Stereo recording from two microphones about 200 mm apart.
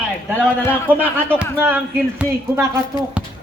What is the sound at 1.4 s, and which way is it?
A man's voice, 10° right (ahead or behind).